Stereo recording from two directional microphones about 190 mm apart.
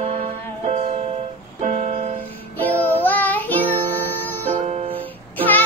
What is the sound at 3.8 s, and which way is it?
Music, 10° left (ahead or behind).